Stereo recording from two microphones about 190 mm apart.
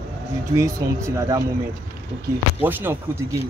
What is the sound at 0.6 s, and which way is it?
Speech, 15° right (ahead or behind).